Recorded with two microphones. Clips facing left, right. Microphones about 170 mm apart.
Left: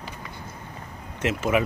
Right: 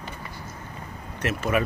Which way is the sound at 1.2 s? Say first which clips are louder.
Left 2 dB; 10° left (ahead or behind).